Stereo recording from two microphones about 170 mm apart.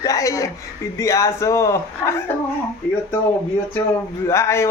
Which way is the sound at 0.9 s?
15° left (ahead or behind).